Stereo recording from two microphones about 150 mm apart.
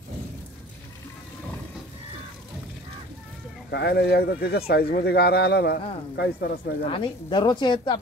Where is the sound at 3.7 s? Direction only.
90° left.